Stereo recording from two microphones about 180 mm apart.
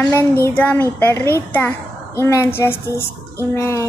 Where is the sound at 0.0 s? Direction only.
10° left (ahead or behind).